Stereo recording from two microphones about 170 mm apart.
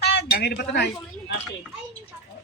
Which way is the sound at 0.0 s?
75° left (ahead or behind).